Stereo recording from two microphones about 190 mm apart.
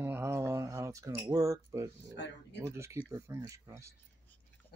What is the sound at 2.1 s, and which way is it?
Speech, 65° left (ahead or behind).